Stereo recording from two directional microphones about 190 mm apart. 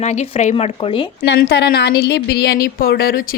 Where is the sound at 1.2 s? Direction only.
55° left (ahead or behind).